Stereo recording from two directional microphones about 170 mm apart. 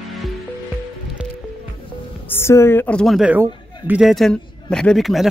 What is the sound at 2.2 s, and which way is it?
A woman's voice, 15° left (ahead or behind).